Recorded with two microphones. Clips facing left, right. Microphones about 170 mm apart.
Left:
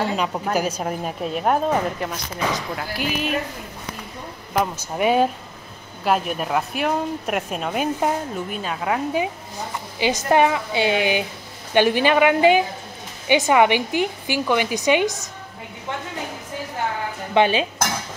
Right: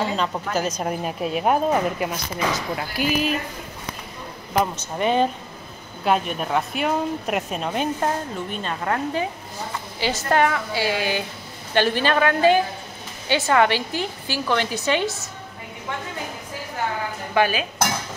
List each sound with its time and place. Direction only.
0.0 s a woman's voice: 10° left (ahead or behind)
4.6 s a woman's voice: 10° left (ahead or behind)
17.3 s dishes: 25° left (ahead or behind)